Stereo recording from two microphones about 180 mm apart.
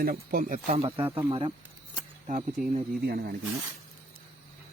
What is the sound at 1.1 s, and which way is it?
Speech, 30° right (ahead or behind).